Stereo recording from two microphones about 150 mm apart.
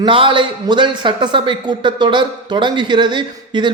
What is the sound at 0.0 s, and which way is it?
A man's voice, 35° right (ahead or behind).